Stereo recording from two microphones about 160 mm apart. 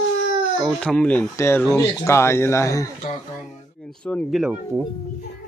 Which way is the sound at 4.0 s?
Centre (ahead or behind).